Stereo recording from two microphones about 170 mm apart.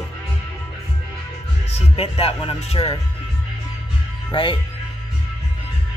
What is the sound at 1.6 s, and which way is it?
Speech, 35° left (ahead or behind).